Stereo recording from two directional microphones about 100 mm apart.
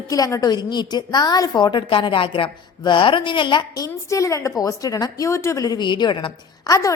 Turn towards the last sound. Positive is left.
turn(degrees=35)  # may be behind; listen again after turning